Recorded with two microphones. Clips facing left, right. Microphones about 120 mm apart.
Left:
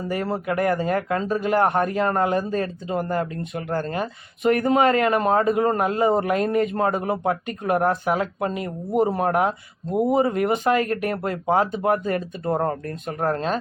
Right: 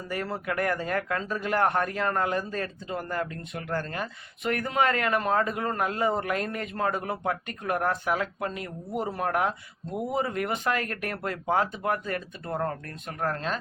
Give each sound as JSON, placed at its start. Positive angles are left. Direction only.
{"t": 0.1, "sound": "speech", "side_deg": 20}